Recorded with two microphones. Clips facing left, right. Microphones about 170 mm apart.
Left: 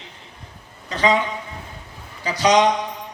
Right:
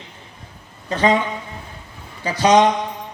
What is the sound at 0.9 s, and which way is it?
Speech, 50° right (ahead or behind).